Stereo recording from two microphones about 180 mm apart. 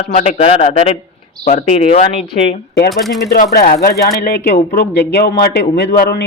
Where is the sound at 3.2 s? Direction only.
60° left (ahead or behind).